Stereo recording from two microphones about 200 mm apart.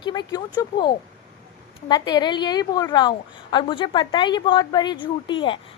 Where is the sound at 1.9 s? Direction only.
20° left (ahead or behind).